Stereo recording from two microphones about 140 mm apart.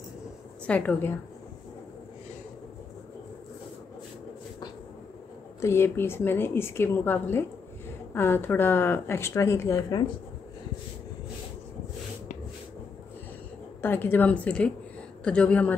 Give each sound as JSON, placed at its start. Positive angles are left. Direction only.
{"t": 0.7, "sound": "speech", "side_deg": 10}
{"t": 5.6, "sound": "speech", "side_deg": 20}
{"t": 13.7, "sound": "speech", "side_deg": 15}